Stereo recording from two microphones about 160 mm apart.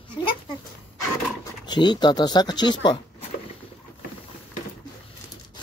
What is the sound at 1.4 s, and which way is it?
Speech, 30° left (ahead or behind).